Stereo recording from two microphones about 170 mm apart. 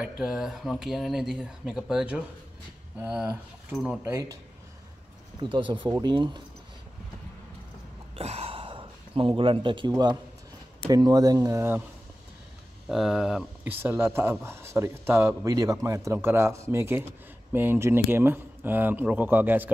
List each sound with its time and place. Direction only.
0.0 s speech: centre (ahead or behind); by 4.4 s 15° right (ahead or behind)
5.4 s speech: 30° right (ahead or behind)
8.2 s speech: 35° right (ahead or behind); by 11.8 s 15° right (ahead or behind)
12.8 s speech: centre (ahead or behind)